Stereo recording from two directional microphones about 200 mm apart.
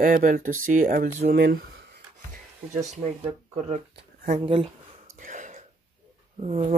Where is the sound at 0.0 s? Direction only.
40° right (ahead or behind).